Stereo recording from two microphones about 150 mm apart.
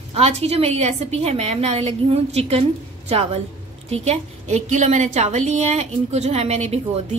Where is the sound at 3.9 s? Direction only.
50° right (ahead or behind).